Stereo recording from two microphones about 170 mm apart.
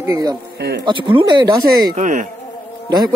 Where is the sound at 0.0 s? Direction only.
20° right (ahead or behind).